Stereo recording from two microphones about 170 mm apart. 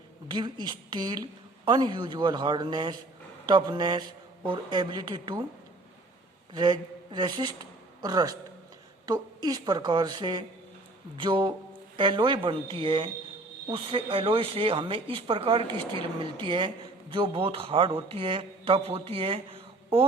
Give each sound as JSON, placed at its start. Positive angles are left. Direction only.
{"t": 0.3, "sound": "a woman's voice", "side_deg": -25}
{"t": 6.5, "sound": "a woman's voice", "side_deg": -25}